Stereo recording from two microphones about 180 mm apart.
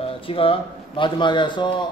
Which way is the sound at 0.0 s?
30° left (ahead or behind).